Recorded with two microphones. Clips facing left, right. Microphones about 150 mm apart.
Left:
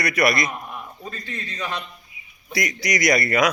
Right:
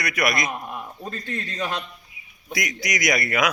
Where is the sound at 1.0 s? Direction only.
45° right (ahead or behind).